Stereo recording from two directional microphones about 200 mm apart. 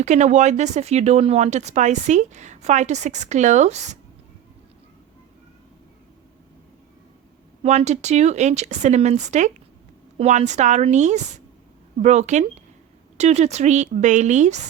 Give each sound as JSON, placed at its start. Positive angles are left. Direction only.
{"t": 0.0, "sound": "speech", "side_deg": -35}
{"t": 7.6, "sound": "speech", "side_deg": -35}